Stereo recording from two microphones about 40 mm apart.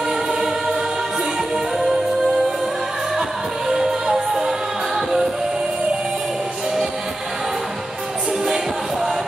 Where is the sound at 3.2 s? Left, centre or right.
Centre.